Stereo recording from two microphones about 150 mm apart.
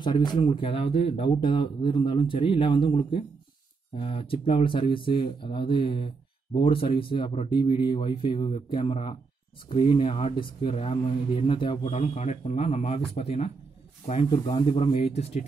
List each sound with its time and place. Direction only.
0.0 s speech: 30° left (ahead or behind)
11.8 s speech: 50° left (ahead or behind)